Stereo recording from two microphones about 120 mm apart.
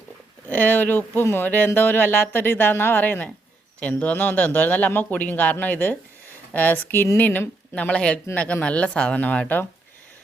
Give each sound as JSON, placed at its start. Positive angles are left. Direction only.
{"t": 0.4, "sound": "speech", "side_deg": 15}